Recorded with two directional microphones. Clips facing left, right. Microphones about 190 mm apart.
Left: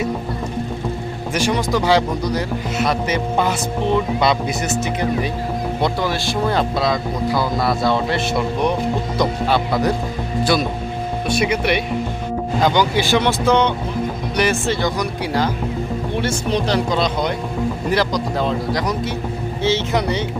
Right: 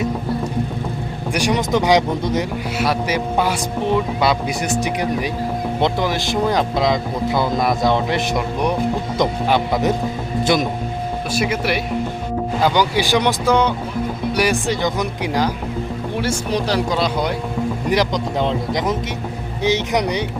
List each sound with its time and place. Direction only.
1.3 s speech: 15° right (ahead or behind)
11.3 s speech: centre (ahead or behind)